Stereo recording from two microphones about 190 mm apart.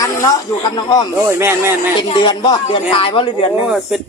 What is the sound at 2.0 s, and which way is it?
Speech, 25° left (ahead or behind).